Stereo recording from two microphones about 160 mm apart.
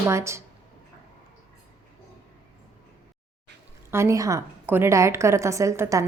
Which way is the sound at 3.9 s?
15° right (ahead or behind).